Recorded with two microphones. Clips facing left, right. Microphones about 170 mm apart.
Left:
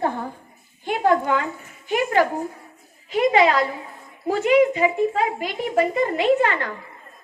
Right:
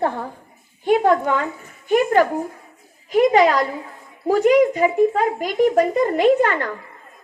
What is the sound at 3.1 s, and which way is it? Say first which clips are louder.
A woman's voice: right 3 dB; 40° right (ahead or behind).